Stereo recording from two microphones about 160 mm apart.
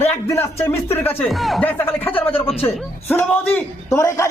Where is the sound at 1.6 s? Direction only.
10° left (ahead or behind).